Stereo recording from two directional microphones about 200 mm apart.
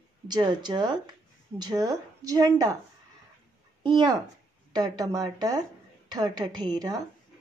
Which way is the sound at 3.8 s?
20° right (ahead or behind).